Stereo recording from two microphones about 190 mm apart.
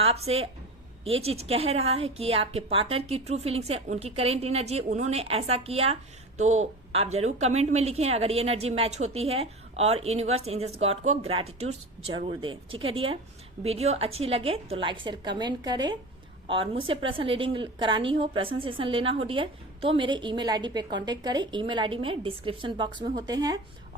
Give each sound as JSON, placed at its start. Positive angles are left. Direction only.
{"t": 0.0, "sound": "a woman's voice", "side_deg": -35}